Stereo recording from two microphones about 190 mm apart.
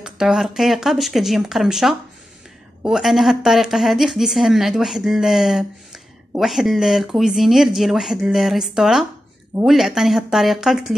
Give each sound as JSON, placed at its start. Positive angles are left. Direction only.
{"t": 0.0, "sound": "a woman's voice", "side_deg": -5}